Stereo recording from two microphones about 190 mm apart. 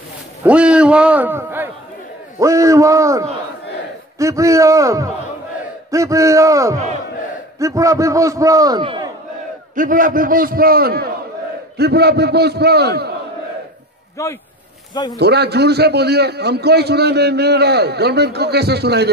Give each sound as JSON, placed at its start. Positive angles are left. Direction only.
{"t": 0.4, "sound": "a man's voice", "side_deg": -5}
{"t": 9.8, "sound": "a man's voice", "side_deg": -45}
{"t": 14.2, "sound": "speech", "side_deg": 15}
{"t": 15.1, "sound": "a man's voice", "side_deg": -60}